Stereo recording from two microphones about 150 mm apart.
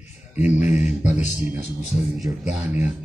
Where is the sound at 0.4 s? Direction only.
10° right (ahead or behind).